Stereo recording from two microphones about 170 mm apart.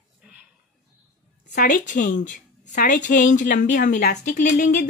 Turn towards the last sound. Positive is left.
turn(degrees=50)  # may be behind; listen again after turning